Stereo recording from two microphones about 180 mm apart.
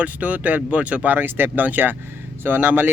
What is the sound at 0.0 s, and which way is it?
Speech, 10° right (ahead or behind).